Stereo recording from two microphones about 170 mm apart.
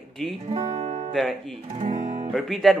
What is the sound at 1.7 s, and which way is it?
Speech, 40° right (ahead or behind).